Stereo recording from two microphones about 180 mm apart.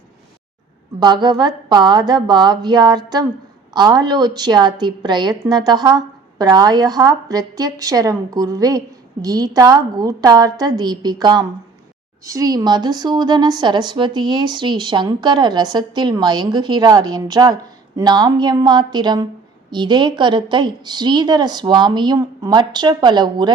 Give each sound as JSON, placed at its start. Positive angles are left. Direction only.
{"t": 0.9, "sound": "a woman's voice", "side_deg": -25}